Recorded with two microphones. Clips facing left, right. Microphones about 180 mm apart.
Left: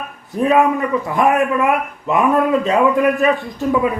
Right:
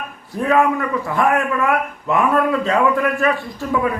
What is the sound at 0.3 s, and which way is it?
A man's voice, 20° left (ahead or behind).